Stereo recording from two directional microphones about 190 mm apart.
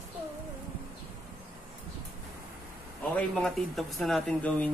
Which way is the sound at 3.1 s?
5° left (ahead or behind).